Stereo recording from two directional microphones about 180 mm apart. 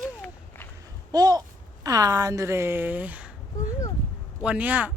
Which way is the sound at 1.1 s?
20° right (ahead or behind).